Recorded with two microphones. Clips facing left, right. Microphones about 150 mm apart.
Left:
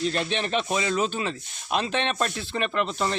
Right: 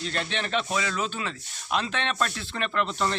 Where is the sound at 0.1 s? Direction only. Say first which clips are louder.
Left 3 dB; 20° left (ahead or behind).